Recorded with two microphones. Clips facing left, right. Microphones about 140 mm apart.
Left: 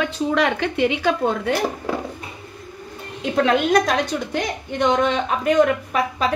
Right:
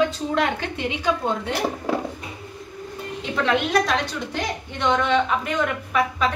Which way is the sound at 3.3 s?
45° left (ahead or behind).